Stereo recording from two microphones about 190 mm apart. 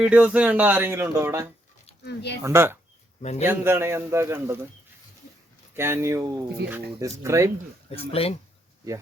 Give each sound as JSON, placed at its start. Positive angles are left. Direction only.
{"t": 0.0, "sound": "speech", "side_deg": -5}
{"t": 2.0, "sound": "speech", "side_deg": 60}
{"t": 2.4, "sound": "speech", "side_deg": -15}
{"t": 3.2, "sound": "a man's voice", "side_deg": 35}
{"t": 3.4, "sound": "speech", "side_deg": -10}
{"t": 5.7, "sound": "speech", "side_deg": -15}
{"t": 8.1, "sound": "speech", "side_deg": 30}